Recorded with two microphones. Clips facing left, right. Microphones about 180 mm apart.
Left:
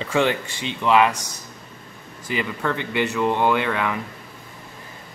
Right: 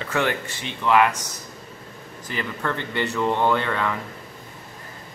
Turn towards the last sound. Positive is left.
turn(degrees=10)  # may be behind; listen again after turning